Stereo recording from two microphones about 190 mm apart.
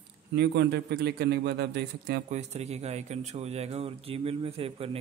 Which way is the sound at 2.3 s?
35° right (ahead or behind).